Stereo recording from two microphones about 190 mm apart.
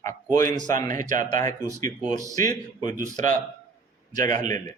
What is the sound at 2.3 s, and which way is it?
Speech, 20° left (ahead or behind).